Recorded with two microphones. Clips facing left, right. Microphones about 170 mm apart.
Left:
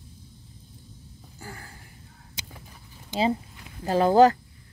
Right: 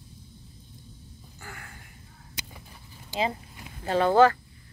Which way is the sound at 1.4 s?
30° left (ahead or behind).